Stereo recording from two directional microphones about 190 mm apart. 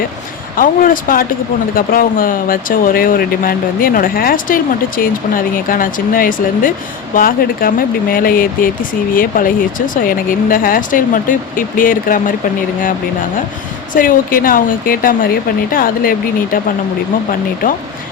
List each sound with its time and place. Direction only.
0.5 s speech: 45° left (ahead or behind)
13.9 s speech: 45° left (ahead or behind)